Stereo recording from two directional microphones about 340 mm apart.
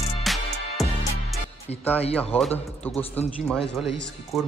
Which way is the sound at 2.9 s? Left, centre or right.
Centre.